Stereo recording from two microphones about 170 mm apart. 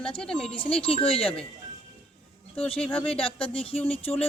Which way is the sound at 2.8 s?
10° left (ahead or behind).